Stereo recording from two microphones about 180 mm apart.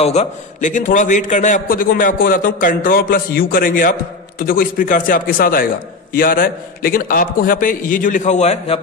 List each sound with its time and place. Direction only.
0.0 s a man's voice: 35° left (ahead or behind)